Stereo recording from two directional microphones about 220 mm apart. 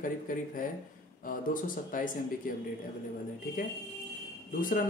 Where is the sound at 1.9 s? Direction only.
40° left (ahead or behind).